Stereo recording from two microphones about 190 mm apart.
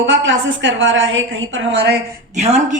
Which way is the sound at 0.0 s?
75° right (ahead or behind).